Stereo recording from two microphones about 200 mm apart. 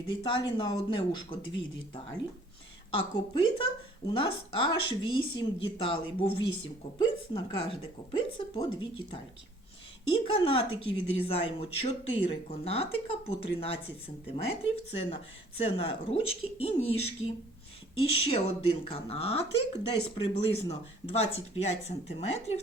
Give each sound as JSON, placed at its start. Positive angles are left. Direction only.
{"t": 0.1, "sound": "a woman's voice", "side_deg": 25}
{"t": 2.9, "sound": "a woman's voice", "side_deg": 25}